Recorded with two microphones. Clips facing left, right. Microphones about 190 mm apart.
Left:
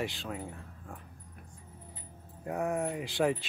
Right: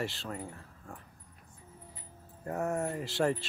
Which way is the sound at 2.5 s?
Centre (ahead or behind).